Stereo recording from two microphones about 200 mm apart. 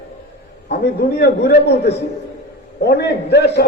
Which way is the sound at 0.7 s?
55° left (ahead or behind).